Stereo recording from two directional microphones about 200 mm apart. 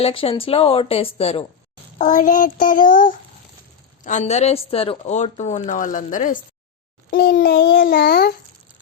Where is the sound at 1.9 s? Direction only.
40° left (ahead or behind).